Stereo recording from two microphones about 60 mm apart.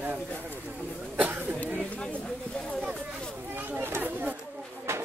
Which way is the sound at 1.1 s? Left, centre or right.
Right.